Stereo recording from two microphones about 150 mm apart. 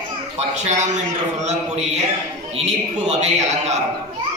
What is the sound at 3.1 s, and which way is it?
Speech, 50° right (ahead or behind).